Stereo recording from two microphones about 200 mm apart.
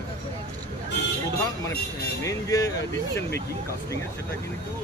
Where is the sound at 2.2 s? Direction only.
15° left (ahead or behind).